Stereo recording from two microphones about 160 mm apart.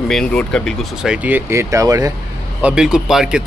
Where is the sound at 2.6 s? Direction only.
5° right (ahead or behind).